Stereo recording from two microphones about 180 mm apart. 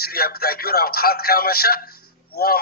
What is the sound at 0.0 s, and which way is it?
Speech, 60° left (ahead or behind).